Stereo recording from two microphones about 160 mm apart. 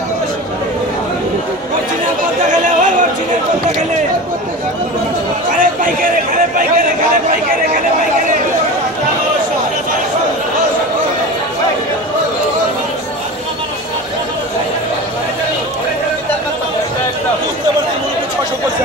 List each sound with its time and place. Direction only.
2.5 s chatter: 50° right (ahead or behind)
5.5 s chatter: 55° right (ahead or behind)